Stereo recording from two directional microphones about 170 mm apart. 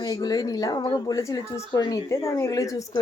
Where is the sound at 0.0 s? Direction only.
20° left (ahead or behind).